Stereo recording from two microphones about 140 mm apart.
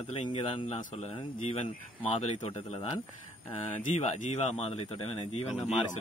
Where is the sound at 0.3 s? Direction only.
45° left (ahead or behind).